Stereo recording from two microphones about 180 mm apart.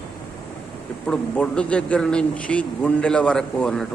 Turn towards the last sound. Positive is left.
turn(degrees=5)  # may be behind; listen again after turning